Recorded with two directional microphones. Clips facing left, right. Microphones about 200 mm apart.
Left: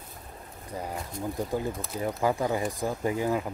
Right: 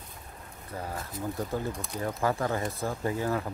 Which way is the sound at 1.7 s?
Centre (ahead or behind).